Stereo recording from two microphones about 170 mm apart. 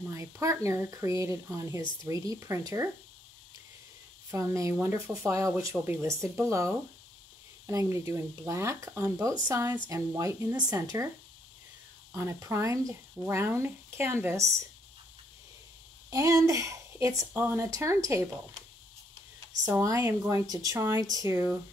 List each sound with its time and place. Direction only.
0.1 s speech: 15° right (ahead or behind)
4.3 s speech: 20° right (ahead or behind)
12.1 s speech: 15° right (ahead or behind)
16.1 s speech: 20° right (ahead or behind)
19.8 s speech: 20° right (ahead or behind)